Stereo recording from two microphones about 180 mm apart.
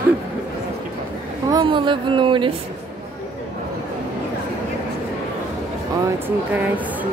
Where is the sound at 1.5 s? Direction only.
25° right (ahead or behind).